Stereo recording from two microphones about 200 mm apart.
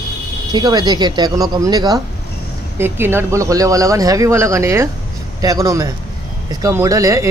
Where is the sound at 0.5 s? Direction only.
20° right (ahead or behind).